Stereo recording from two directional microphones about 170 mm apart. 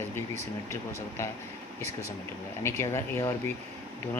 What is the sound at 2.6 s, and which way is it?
Speech, 15° left (ahead or behind).